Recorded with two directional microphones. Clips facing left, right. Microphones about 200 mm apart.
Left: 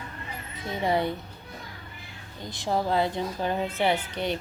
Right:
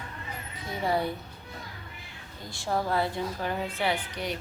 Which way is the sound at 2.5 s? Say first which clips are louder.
Left 2 dB; 20° left (ahead or behind).